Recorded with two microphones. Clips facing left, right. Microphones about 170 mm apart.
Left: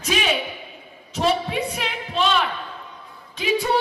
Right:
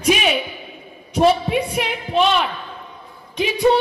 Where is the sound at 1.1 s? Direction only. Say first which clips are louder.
Right 6 dB; 15° right (ahead or behind).